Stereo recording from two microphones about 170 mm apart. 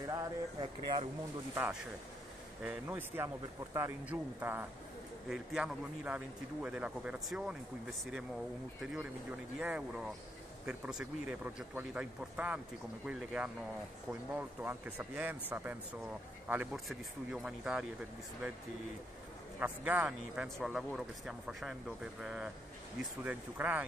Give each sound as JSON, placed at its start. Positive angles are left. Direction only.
{"t": 0.0, "sound": "speech", "side_deg": -25}
{"t": 1.5, "sound": "speech", "side_deg": -10}
{"t": 9.6, "sound": "speech", "side_deg": -5}
{"t": 19.6, "sound": "speech", "side_deg": -10}